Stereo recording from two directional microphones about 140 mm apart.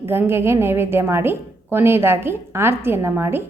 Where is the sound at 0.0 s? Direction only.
15° right (ahead or behind).